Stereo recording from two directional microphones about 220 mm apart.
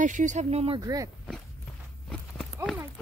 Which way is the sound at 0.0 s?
35° right (ahead or behind).